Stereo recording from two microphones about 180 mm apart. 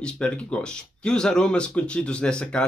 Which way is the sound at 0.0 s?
5° left (ahead or behind).